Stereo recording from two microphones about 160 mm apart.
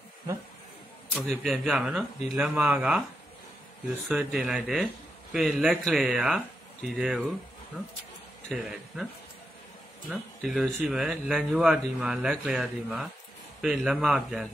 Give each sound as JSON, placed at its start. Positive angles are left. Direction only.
{"t": 1.1, "sound": "speech", "side_deg": 0}
{"t": 4.1, "sound": "speech", "side_deg": 0}
{"t": 8.5, "sound": "speech", "side_deg": 0}
{"t": 10.0, "sound": "speech", "side_deg": 0}